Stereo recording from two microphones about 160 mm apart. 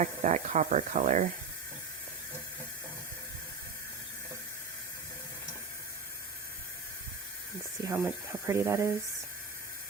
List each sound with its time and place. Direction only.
0.0 s speech: 50° right (ahead or behind)
7.9 s speech: 15° right (ahead or behind)